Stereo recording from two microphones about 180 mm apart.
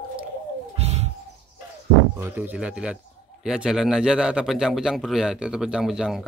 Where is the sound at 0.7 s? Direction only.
35° right (ahead or behind).